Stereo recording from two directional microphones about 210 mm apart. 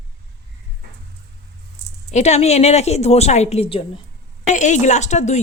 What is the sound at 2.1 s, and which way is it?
A woman's voice, 30° left (ahead or behind).